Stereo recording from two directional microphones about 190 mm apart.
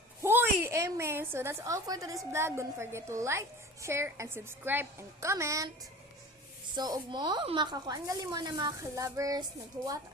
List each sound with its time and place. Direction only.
0.2 s a woman's voice: 10° right (ahead or behind)
6.7 s speech: 20° right (ahead or behind)